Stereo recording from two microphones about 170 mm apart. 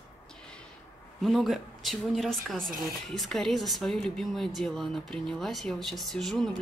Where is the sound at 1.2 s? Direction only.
Centre (ahead or behind).